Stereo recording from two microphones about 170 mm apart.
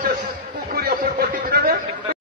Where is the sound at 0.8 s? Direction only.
65° right (ahead or behind).